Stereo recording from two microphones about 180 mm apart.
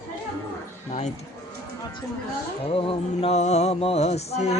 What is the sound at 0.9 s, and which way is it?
Speech, 40° left (ahead or behind).